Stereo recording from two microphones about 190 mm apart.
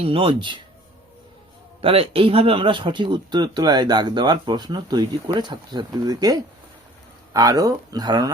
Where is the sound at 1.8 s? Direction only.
30° right (ahead or behind).